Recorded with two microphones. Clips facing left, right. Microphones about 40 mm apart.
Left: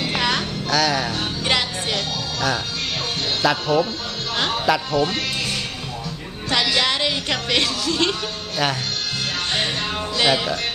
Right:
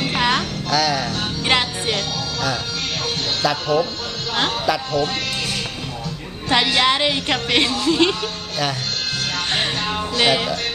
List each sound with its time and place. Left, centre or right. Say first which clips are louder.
0.0 s music: right 2 dB; centre
0.7 s music: even; centre
1.4 s music: right 3 dB; centre
3.4 s music: even; centre
4.5 s speech: left 1 dB; centre
6.5 s speech: right 3 dB; centre
9.5 s speech: right 2 dB; centre